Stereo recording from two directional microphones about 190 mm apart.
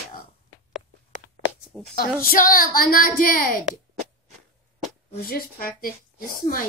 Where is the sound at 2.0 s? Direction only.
50° left (ahead or behind).